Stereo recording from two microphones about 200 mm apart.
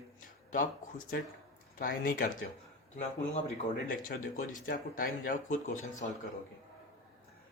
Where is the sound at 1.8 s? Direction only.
45° left (ahead or behind).